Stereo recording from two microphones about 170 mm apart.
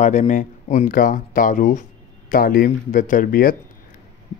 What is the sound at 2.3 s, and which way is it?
Speech, 60° left (ahead or behind).